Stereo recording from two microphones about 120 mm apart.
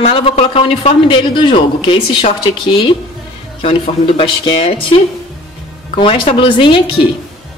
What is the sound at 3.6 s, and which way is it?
Speech, 50° left (ahead or behind).